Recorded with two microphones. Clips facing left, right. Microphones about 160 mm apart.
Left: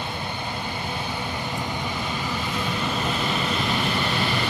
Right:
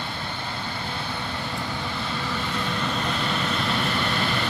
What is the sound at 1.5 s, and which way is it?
Vehicle, 15° left (ahead or behind).